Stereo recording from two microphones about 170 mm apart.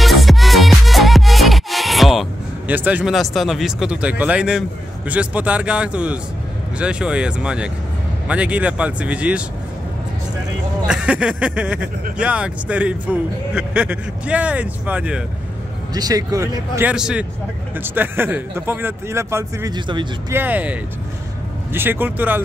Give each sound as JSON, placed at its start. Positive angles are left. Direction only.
{"t": 0.0, "sound": "music", "side_deg": 0}
{"t": 2.7, "sound": "speech", "side_deg": -10}
{"t": 10.9, "sound": "speech", "side_deg": -5}
{"t": 15.9, "sound": "speech", "side_deg": -20}
{"t": 16.9, "sound": "speech", "side_deg": -5}
{"t": 20.3, "sound": "speech", "side_deg": -10}